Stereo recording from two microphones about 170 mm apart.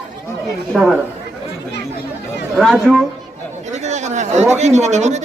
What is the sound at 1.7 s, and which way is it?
Chatter, 90° left.